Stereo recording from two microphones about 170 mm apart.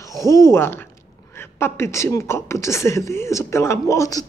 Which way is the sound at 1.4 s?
15° left (ahead or behind).